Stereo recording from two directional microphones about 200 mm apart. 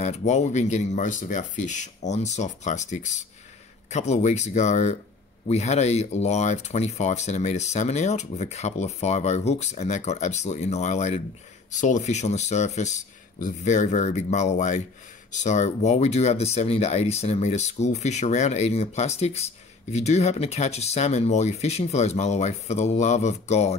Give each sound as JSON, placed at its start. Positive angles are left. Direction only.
{"t": 0.0, "sound": "speech", "side_deg": 35}